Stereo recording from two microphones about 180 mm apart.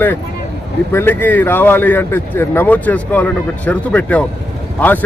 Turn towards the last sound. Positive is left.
turn(degrees=10)  # may be behind; listen again after turning